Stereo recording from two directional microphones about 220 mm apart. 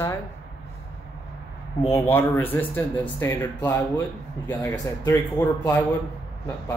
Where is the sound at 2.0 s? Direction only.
10° left (ahead or behind).